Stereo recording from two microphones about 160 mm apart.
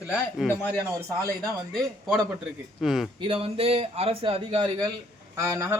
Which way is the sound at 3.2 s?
35° right (ahead or behind).